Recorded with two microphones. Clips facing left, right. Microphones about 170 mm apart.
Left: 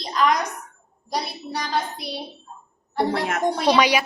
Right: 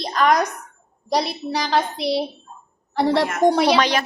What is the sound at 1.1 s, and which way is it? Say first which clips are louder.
A child's voice: right 6 dB; 85° right.